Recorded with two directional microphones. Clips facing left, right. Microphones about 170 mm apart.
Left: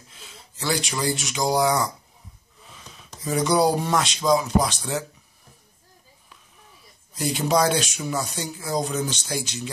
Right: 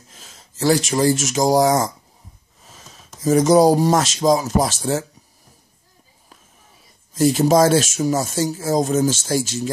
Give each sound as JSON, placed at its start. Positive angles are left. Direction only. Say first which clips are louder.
{"t": 0.1, "sound": "speech", "louder": "left 1 dB", "side_deg": -45}
{"t": 2.6, "sound": "a sound", "louder": "right 1 dB", "side_deg": -45}
{"t": 3.2, "sound": "speech", "louder": "right 8 dB", "side_deg": -45}
{"t": 7.3, "sound": "speech", "louder": "right 5 dB", "side_deg": -45}